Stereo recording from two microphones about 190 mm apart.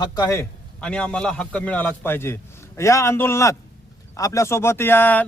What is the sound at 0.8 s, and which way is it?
Speech, 5° left (ahead or behind).